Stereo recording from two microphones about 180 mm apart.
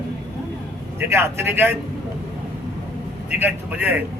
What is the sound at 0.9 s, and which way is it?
Speech, 15° right (ahead or behind).